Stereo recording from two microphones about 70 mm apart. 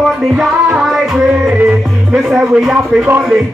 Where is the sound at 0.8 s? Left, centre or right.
Centre.